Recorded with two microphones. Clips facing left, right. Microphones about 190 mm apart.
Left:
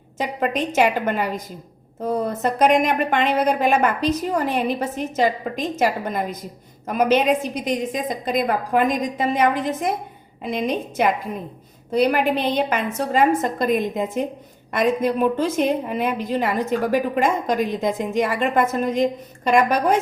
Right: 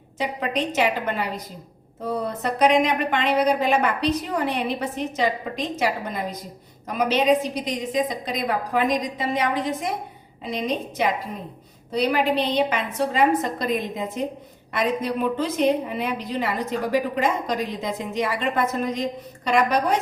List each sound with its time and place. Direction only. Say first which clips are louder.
0.2 s a woman's voice: left 2 dB; 50° left (ahead or behind)